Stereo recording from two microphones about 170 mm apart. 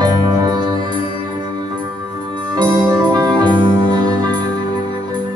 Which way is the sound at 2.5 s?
25° right (ahead or behind).